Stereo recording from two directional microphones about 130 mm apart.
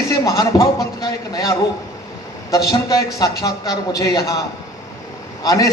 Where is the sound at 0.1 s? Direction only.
25° left (ahead or behind).